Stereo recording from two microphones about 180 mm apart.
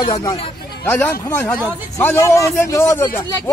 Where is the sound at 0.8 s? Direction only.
10° left (ahead or behind).